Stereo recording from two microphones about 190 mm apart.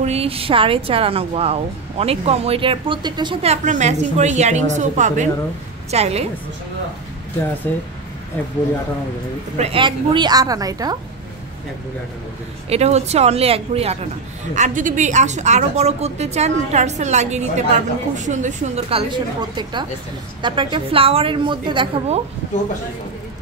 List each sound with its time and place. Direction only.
0.0 s speech: 30° right (ahead or behind)
3.6 s a woman's voice: 40° right (ahead or behind)
7.7 s speech: 10° left (ahead or behind)
9.6 s speech: 30° right (ahead or behind)
12.6 s a woman's voice: 35° right (ahead or behind)